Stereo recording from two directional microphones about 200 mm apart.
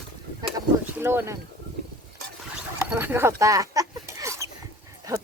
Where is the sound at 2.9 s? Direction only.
10° right (ahead or behind).